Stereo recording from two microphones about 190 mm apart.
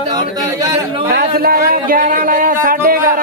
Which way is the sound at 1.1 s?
55° right (ahead or behind).